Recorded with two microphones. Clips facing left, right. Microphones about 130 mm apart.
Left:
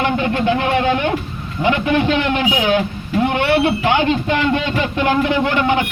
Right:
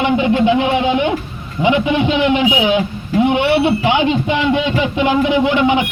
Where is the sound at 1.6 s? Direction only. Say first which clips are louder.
Right 2 dB; 15° right (ahead or behind).